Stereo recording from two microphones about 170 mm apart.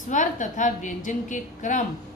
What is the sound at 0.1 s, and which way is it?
A woman's voice, 50° left (ahead or behind).